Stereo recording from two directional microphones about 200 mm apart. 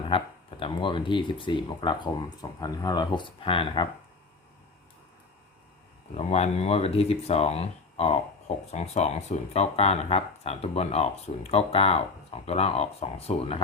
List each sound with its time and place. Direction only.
0.1 s speech: 25° left (ahead or behind)
6.1 s speech: 30° left (ahead or behind)